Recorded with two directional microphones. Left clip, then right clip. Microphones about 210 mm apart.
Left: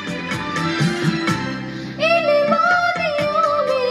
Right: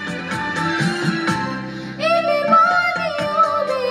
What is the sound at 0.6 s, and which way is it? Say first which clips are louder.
Music: even; 35° left (ahead or behind).